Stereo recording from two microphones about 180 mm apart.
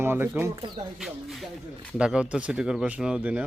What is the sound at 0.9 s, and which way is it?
A man's voice, centre (ahead or behind).